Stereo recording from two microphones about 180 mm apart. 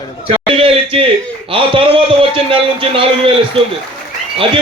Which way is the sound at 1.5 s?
30° right (ahead or behind).